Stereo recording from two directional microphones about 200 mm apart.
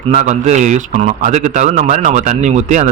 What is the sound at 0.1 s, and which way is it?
Speech, 35° right (ahead or behind).